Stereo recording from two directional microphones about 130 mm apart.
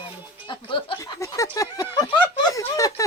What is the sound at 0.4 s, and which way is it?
Speech, 40° left (ahead or behind).